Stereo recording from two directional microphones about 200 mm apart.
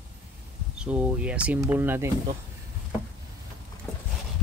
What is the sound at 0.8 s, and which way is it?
Speech, 5° right (ahead or behind).